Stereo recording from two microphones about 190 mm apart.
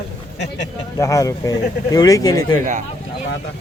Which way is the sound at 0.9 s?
15° left (ahead or behind).